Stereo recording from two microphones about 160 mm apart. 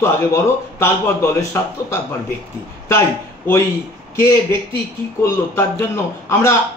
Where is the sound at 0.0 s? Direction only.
15° left (ahead or behind).